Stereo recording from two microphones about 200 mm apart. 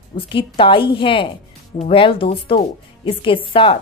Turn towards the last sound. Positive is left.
turn(degrees=25)  # may be behind; listen again after turning